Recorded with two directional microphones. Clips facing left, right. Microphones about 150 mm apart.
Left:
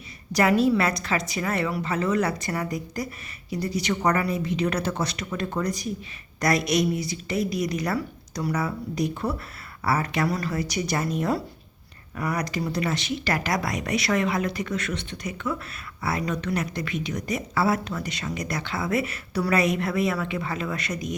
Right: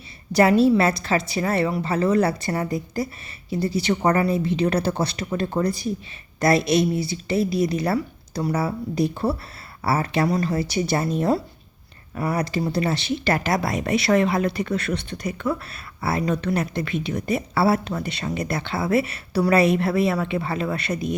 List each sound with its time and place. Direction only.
0.3 s a woman's voice: 30° right (ahead or behind)